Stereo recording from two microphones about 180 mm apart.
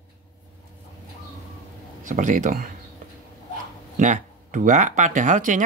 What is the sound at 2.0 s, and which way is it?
Speech, 45° right (ahead or behind).